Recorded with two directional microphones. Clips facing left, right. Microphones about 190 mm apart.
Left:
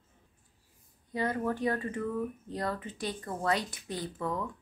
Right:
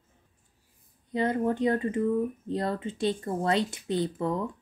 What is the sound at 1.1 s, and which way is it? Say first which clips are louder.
Speech: right 5 dB; 20° right (ahead or behind).